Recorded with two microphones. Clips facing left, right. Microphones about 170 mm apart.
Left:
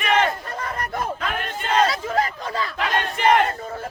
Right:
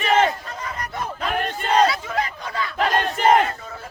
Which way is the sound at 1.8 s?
40° left (ahead or behind).